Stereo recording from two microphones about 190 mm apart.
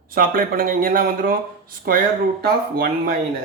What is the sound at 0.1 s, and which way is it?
Speech, 50° right (ahead or behind).